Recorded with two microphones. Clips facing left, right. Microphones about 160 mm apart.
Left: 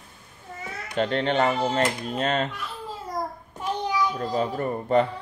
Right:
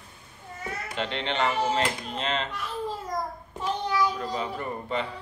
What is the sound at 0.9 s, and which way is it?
Speech, 45° left (ahead or behind).